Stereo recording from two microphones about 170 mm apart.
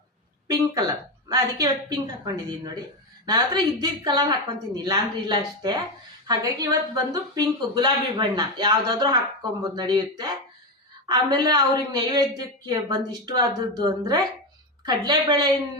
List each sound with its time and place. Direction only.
0.4 s a woman's voice: 25° right (ahead or behind)
3.2 s a woman's voice: 25° right (ahead or behind)